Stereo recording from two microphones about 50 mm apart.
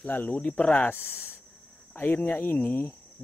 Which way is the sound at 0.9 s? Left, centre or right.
Left.